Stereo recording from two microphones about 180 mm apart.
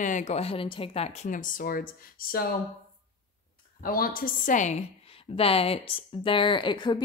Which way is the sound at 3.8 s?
55° left (ahead or behind).